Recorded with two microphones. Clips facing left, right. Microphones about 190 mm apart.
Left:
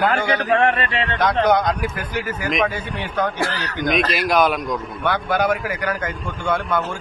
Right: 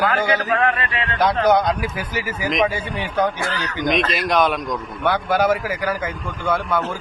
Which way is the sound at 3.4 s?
35° left (ahead or behind).